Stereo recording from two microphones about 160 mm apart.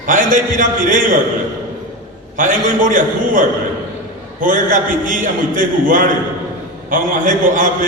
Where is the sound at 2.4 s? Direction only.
55° right (ahead or behind).